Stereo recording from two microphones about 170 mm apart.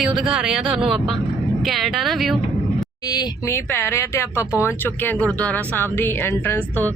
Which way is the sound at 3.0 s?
25° left (ahead or behind).